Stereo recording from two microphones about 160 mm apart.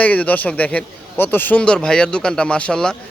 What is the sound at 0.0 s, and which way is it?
Speech, 10° left (ahead or behind).